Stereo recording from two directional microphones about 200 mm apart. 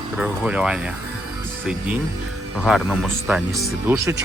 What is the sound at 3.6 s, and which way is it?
Speech, 15° right (ahead or behind).